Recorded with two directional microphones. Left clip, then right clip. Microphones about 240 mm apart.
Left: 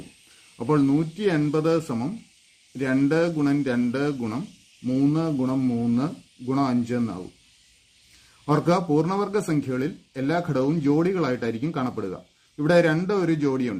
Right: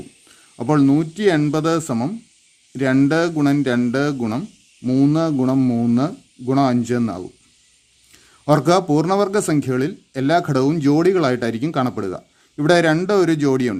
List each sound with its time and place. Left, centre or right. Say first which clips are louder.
0.7 s speech: right 5 dB; right
8.4 s speech: right 7 dB; right